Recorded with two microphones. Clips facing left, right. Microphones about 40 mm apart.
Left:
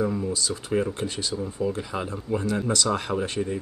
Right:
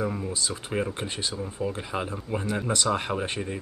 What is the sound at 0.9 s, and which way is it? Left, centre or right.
Speech, right.